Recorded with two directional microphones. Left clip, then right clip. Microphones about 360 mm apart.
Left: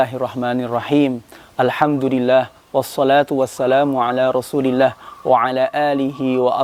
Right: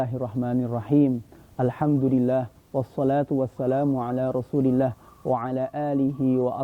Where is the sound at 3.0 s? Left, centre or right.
Centre.